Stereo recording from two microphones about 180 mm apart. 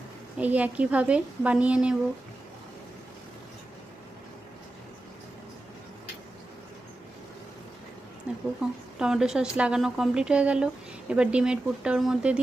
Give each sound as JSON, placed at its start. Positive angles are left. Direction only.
{"t": 0.3, "sound": "a woman's voice", "side_deg": -10}
{"t": 8.3, "sound": "a sound", "side_deg": -5}
{"t": 9.0, "sound": "speech", "side_deg": -5}